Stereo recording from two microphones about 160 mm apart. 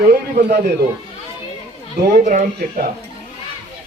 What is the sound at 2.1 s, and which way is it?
Speech, 60° right (ahead or behind).